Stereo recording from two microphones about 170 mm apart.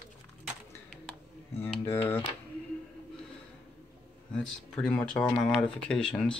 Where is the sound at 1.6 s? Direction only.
10° left (ahead or behind).